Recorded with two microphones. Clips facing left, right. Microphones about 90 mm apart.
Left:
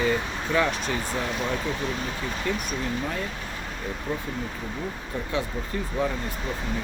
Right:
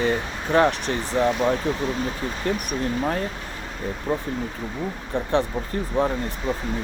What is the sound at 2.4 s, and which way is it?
Speech, 40° right (ahead or behind).